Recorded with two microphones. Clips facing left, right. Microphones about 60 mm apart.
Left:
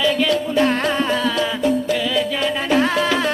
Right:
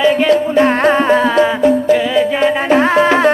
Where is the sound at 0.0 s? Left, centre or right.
Right.